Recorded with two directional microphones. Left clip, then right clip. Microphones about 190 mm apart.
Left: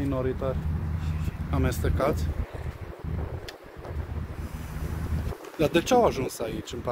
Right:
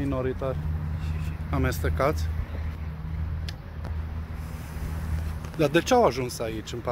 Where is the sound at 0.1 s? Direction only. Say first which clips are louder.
Even; 10° left (ahead or behind).